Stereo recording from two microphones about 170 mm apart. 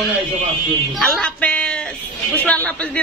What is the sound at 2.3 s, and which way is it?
Speech, 10° left (ahead or behind).